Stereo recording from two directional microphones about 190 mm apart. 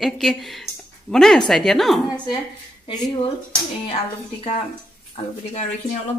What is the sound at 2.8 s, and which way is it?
Speech, 25° left (ahead or behind).